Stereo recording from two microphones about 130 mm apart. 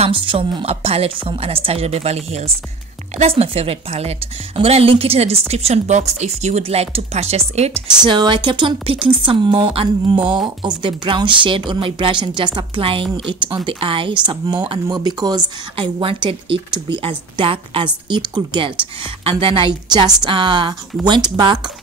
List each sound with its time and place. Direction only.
0.0 s a woman's voice: 40° right (ahead or behind)
8.0 s speech: 35° right (ahead or behind)